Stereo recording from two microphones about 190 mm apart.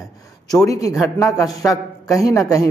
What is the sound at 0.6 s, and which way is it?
A man's voice, 15° left (ahead or behind).